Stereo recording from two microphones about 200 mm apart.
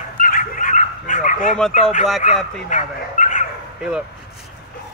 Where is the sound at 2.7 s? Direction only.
40° left (ahead or behind).